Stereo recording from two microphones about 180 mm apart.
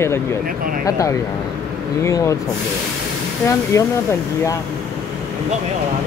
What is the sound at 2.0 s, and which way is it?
Speech, 15° left (ahead or behind).